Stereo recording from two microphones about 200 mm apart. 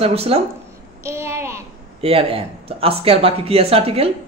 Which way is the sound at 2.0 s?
30° right (ahead or behind).